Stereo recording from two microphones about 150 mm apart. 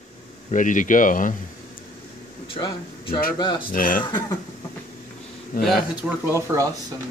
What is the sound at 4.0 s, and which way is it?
Speech, 25° left (ahead or behind).